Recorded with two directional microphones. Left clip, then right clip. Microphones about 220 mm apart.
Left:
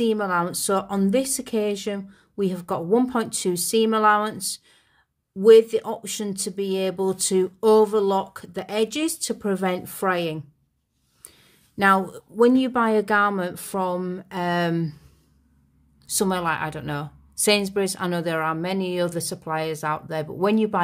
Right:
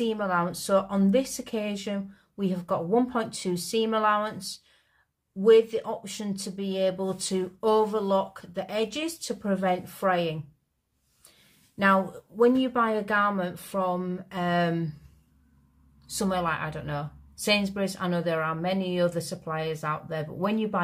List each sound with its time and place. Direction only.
0.0 s speech: 45° left (ahead or behind)
11.7 s speech: 45° left (ahead or behind)
16.2 s speech: 45° left (ahead or behind)